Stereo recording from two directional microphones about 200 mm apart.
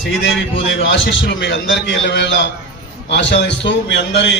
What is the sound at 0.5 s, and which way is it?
A man's voice, 65° left (ahead or behind).